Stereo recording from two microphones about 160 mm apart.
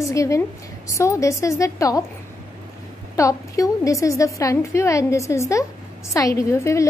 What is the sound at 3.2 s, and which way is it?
A woman's voice, 20° left (ahead or behind).